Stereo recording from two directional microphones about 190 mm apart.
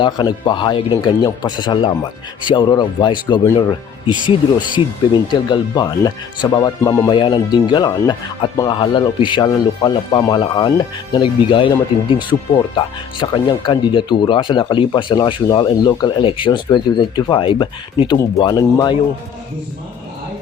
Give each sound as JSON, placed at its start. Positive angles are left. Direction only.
{"t": 0.0, "sound": "speech", "side_deg": 25}